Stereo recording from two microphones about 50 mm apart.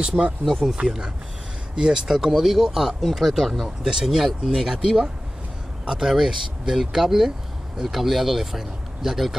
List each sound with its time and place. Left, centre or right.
0.0 s speech: centre
0.5 s speech: centre
0.8 s speech: centre